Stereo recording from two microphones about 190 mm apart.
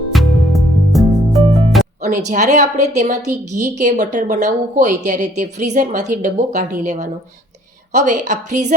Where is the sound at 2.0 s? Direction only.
40° right (ahead or behind).